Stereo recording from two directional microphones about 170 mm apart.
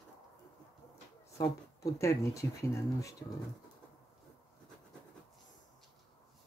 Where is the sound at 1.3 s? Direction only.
20° left (ahead or behind).